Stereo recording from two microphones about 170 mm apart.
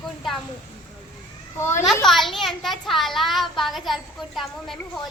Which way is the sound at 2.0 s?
Centre (ahead or behind).